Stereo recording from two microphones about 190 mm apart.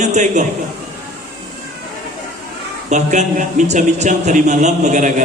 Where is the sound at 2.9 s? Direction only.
40° right (ahead or behind).